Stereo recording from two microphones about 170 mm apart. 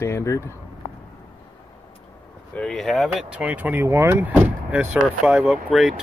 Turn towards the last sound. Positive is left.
turn(degrees=0)  # may be behind; listen again after turning